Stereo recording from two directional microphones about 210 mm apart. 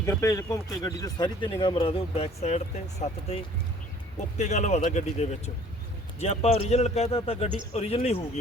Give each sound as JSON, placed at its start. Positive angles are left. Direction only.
{"t": 0.0, "sound": "speech", "side_deg": 10}